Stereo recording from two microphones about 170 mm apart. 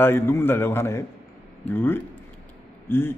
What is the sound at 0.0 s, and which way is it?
A man's voice, 15° left (ahead or behind).